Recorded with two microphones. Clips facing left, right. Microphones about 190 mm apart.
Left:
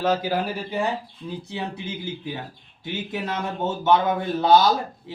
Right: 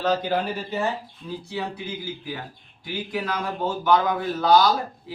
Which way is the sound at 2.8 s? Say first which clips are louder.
Even; 25° left (ahead or behind).